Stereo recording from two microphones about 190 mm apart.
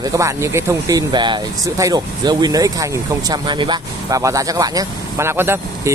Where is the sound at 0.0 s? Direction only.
15° right (ahead or behind).